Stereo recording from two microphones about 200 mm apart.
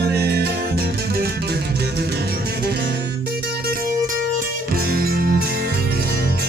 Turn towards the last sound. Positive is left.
turn(degrees=-50)  # may be behind; listen again after turning